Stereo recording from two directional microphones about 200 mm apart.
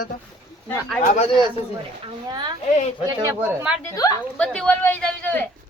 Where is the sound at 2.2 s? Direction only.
20° right (ahead or behind).